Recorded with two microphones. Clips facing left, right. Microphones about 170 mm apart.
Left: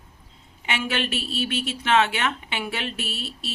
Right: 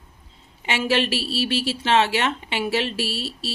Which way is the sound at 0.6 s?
30° right (ahead or behind).